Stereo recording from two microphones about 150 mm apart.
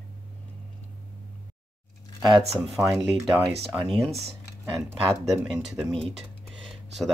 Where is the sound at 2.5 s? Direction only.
5° right (ahead or behind).